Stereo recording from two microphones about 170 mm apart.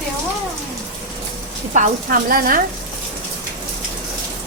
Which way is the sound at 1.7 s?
55° right (ahead or behind).